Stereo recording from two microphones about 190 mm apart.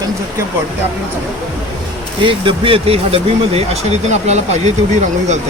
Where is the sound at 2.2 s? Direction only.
25° right (ahead or behind).